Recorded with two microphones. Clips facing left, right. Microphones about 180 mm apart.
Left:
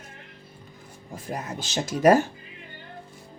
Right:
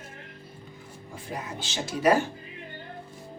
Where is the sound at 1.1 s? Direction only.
40° left (ahead or behind).